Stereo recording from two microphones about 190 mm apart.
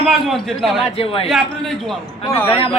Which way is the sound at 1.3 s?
Centre (ahead or behind).